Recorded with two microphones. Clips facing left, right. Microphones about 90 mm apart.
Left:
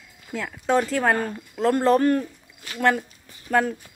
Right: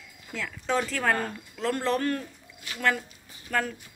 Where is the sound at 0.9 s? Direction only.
20° left (ahead or behind).